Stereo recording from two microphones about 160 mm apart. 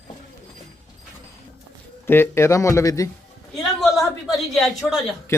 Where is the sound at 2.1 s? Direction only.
15° left (ahead or behind).